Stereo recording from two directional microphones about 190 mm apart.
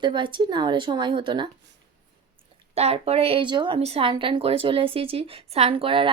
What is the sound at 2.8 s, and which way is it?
A woman's voice, 35° right (ahead or behind).